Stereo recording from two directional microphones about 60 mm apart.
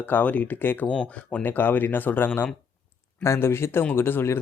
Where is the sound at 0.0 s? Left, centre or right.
Left.